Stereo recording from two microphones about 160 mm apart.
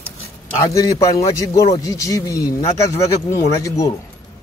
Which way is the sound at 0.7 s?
20° left (ahead or behind).